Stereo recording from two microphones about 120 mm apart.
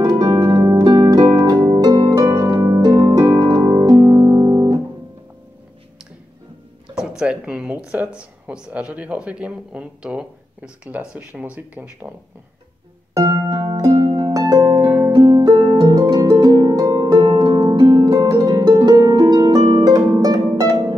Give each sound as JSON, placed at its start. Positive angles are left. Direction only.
{"t": 0.0, "sound": "harp", "side_deg": -30}
{"t": 2.2, "sound": "harp", "side_deg": -25}
{"t": 3.8, "sound": "music", "side_deg": -35}
{"t": 7.0, "sound": "speech", "side_deg": -5}
{"t": 13.1, "sound": "harp", "side_deg": -30}
{"t": 15.1, "sound": "music", "side_deg": -30}
{"t": 15.7, "sound": "harp", "side_deg": -30}